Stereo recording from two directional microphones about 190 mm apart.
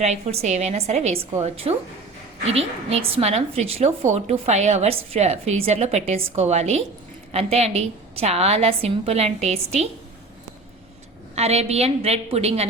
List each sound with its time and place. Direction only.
0.0 s a woman's voice: 35° right (ahead or behind)
11.3 s a woman's voice: 35° right (ahead or behind)